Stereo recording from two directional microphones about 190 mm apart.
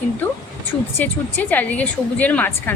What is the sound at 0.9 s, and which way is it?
A woman's voice, 10° left (ahead or behind).